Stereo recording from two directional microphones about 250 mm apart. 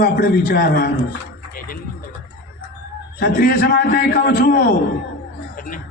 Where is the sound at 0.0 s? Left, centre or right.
Left.